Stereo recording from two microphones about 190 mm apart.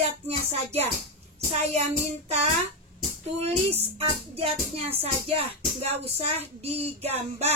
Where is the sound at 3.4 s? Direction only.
30° right (ahead or behind).